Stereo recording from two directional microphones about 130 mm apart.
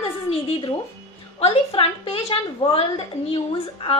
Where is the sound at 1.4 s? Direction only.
50° left (ahead or behind).